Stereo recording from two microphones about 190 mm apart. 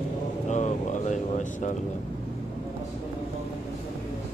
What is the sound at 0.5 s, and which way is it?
Vehicle, 40° left (ahead or behind).